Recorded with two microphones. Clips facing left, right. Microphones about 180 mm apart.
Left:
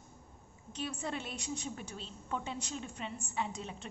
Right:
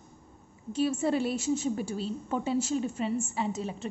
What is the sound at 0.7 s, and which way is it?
A woman's voice, 5° right (ahead or behind).